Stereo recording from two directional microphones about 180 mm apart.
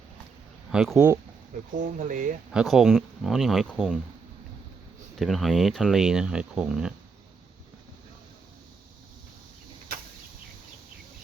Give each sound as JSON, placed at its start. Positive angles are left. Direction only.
{"t": 0.7, "sound": "speech", "side_deg": -5}
{"t": 1.7, "sound": "speech", "side_deg": -45}
{"t": 2.5, "sound": "speech", "side_deg": -5}
{"t": 5.1, "sound": "speech", "side_deg": 0}